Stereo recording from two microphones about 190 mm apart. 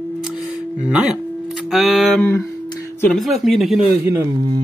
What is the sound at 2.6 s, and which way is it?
Music, 15° left (ahead or behind).